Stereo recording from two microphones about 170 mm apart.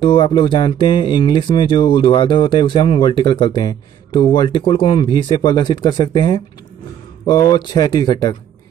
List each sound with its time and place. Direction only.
0.0 s speech: 30° left (ahead or behind)